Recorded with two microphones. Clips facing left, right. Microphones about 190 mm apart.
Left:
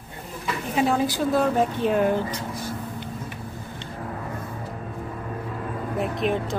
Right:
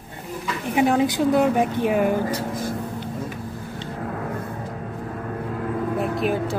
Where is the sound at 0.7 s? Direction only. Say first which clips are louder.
Right 4 dB; 20° right (ahead or behind).